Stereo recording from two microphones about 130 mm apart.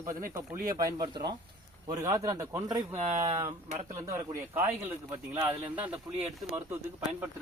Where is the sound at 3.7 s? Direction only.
65° right (ahead or behind).